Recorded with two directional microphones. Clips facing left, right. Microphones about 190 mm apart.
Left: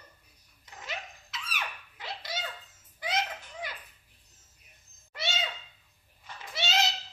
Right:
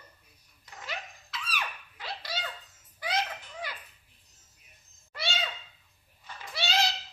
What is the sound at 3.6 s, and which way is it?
Dishes, 20° left (ahead or behind).